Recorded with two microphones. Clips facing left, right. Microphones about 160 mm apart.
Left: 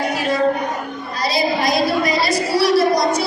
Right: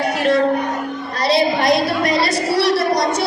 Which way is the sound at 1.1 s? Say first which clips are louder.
Right 3 dB; 65° right (ahead or behind).